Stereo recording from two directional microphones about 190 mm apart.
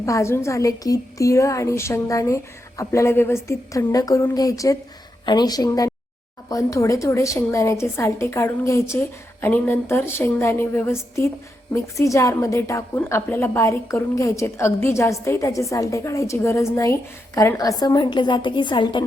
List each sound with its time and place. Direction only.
0.0 s a woman's voice: 15° left (ahead or behind)